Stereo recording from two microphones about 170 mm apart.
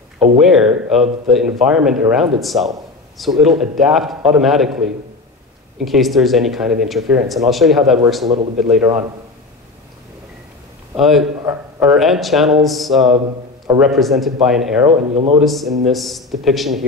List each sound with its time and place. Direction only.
0.4 s a sound: 5° right (ahead or behind)
1.2 s speech: 5° right (ahead or behind)
5.9 s speech: centre (ahead or behind)
11.0 s speech: centre (ahead or behind)
14.9 s speech: 40° right (ahead or behind)
15.4 s speech: centre (ahead or behind)